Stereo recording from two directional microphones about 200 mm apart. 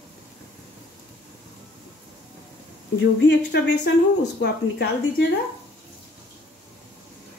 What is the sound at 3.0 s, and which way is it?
Speech, 60° left (ahead or behind).